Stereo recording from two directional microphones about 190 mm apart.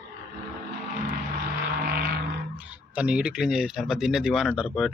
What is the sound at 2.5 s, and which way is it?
Speech, 5° right (ahead or behind).